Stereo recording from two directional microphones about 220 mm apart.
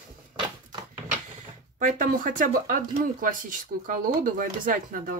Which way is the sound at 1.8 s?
35° right (ahead or behind).